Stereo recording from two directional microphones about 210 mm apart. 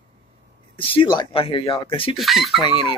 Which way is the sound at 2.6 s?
20° left (ahead or behind).